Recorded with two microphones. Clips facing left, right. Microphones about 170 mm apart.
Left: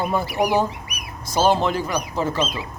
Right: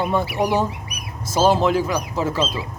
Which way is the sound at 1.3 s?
5° right (ahead or behind).